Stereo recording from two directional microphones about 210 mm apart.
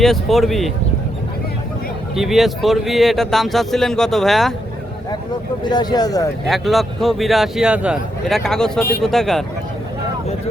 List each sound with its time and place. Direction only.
0.0 s speech: centre (ahead or behind)
2.1 s speech: centre (ahead or behind)
5.6 s speech: 20° left (ahead or behind)
6.5 s speech: centre (ahead or behind)